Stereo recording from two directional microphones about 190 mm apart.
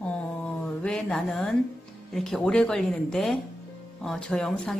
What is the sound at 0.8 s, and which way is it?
Speech, 5° left (ahead or behind).